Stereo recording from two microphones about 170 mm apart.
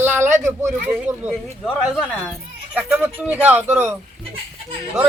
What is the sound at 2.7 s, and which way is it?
Speech, 10° right (ahead or behind).